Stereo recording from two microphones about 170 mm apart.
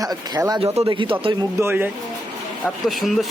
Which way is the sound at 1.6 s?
15° right (ahead or behind).